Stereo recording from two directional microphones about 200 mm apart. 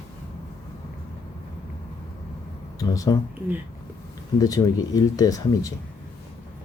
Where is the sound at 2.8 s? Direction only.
20° left (ahead or behind).